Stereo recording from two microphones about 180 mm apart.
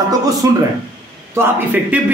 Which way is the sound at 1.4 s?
10° right (ahead or behind).